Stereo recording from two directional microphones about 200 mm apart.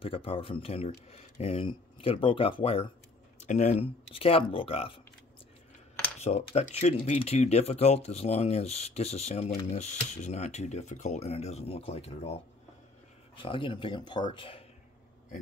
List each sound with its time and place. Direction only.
0.0 s speech: 30° left (ahead or behind)
6.1 s speech: 35° left (ahead or behind)
13.4 s speech: 25° left (ahead or behind)